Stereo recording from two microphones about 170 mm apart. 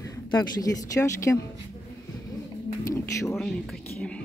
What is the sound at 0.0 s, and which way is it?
Speech, 20° left (ahead or behind).